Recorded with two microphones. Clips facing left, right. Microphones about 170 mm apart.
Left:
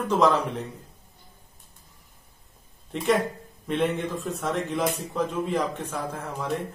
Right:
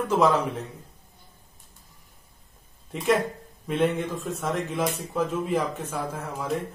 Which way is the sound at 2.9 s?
Centre (ahead or behind).